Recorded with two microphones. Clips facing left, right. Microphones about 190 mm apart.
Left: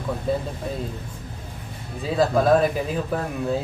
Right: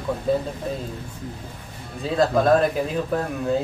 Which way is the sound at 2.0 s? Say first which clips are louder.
Even; centre (ahead or behind).